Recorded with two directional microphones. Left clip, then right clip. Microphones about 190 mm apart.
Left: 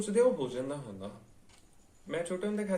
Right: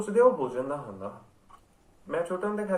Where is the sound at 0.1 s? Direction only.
15° left (ahead or behind).